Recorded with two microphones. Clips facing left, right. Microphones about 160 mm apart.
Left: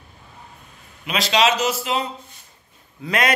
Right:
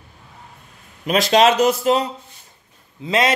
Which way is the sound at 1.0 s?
50° right (ahead or behind).